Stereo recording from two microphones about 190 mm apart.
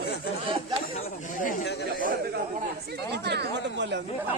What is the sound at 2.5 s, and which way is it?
Speech, 55° right (ahead or behind).